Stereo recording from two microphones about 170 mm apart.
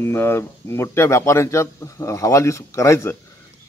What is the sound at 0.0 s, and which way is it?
Speech, 15° left (ahead or behind).